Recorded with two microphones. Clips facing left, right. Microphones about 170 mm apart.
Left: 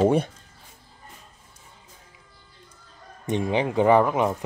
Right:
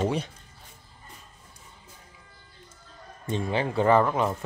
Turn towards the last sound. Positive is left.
turn(degrees=15)  # may be behind; listen again after turning